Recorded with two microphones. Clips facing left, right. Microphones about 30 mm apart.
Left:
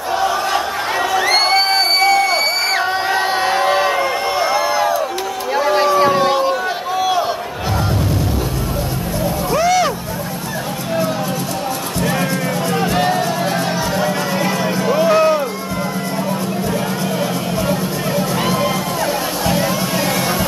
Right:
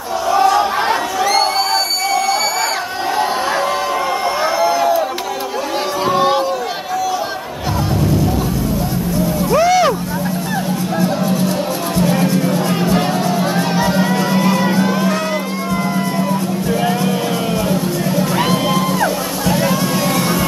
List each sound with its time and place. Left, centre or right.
1.2 s crowd: left
3.2 s crowd: centre
4.6 s crowd: centre
6.0 s a sound: centre
9.5 s vehicle: centre
12.0 s music: centre
15.0 s run: centre
19.4 s music: centre